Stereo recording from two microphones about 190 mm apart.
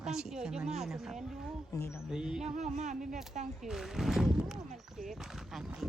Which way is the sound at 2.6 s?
40° right (ahead or behind).